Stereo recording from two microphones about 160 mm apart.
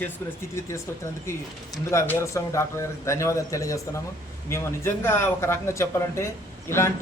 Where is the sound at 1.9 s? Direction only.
15° left (ahead or behind).